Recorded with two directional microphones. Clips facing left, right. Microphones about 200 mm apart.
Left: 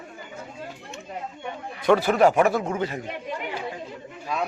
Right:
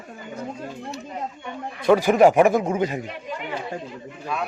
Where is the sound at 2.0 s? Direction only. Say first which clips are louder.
Right 4 dB; 15° right (ahead or behind).